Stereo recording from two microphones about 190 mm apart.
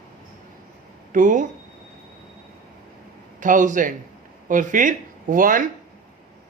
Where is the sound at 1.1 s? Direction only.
45° right (ahead or behind).